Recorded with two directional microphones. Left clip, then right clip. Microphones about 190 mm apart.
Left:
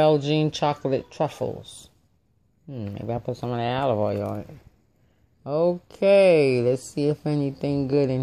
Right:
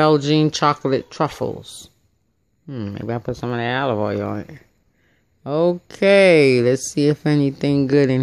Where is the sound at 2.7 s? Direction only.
25° right (ahead or behind).